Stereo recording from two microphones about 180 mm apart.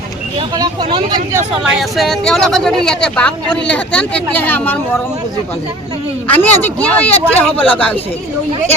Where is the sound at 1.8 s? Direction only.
Centre (ahead or behind).